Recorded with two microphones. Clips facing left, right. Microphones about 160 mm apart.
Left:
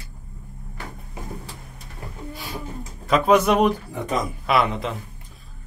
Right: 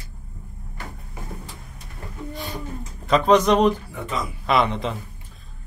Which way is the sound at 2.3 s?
Centre (ahead or behind).